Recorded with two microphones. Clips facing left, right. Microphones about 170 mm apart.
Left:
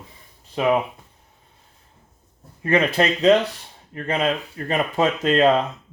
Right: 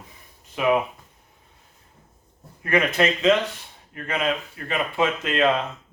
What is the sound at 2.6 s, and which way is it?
Speech, 30° left (ahead or behind).